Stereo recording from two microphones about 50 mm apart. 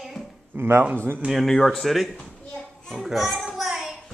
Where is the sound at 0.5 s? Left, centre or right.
Right.